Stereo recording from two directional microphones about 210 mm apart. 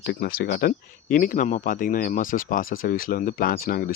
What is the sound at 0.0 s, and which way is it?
Speech, 50° left (ahead or behind).